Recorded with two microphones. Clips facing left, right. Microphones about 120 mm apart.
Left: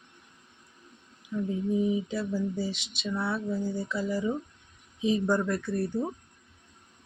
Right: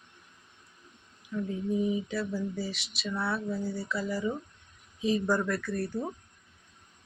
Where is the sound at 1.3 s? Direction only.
20° left (ahead or behind).